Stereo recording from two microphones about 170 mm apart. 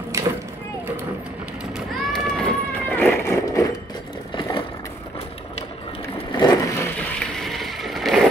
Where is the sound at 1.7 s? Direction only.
Centre (ahead or behind); by 3.7 s 20° left (ahead or behind).